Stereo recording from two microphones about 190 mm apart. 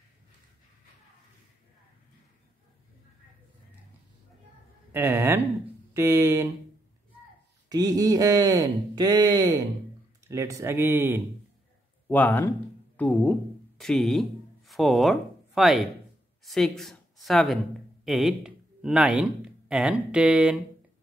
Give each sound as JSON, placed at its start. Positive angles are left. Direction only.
{"t": 4.9, "sound": "speech", "side_deg": -10}
{"t": 7.7, "sound": "speech", "side_deg": -20}
{"t": 12.1, "sound": "speech", "side_deg": 10}